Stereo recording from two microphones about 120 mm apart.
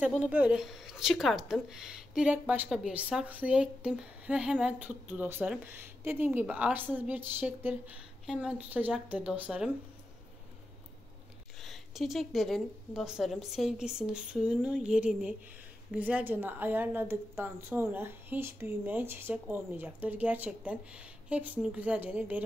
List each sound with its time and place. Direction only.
0.0 s a woman's voice: 10° right (ahead or behind)
11.6 s a woman's voice: centre (ahead or behind)